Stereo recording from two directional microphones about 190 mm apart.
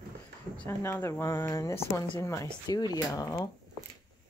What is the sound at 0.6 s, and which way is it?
Speech, 10° left (ahead or behind).